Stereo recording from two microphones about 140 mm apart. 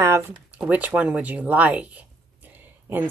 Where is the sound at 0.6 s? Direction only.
10° right (ahead or behind).